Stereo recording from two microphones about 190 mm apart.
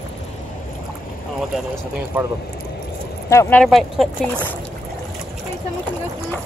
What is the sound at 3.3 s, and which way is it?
Speech, 15° left (ahead or behind).